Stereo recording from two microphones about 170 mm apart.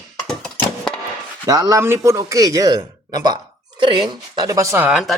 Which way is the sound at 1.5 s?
20° right (ahead or behind).